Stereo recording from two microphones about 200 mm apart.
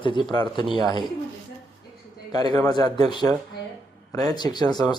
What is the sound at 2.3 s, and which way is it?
Speech, 20° left (ahead or behind).